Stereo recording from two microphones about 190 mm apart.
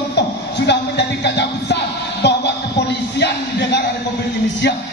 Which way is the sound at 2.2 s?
65° left (ahead or behind).